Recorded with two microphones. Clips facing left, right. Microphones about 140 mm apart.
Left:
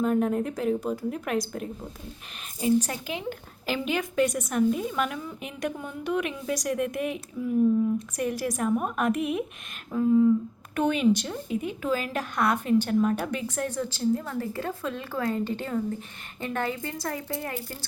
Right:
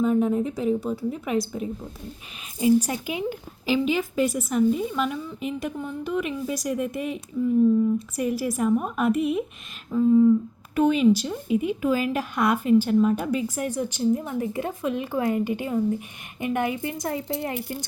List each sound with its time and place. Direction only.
0.0 s a woman's voice: centre (ahead or behind)
2.6 s a woman's voice: 10° right (ahead or behind)